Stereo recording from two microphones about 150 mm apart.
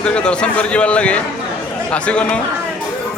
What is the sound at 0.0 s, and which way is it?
Speech, 5° left (ahead or behind).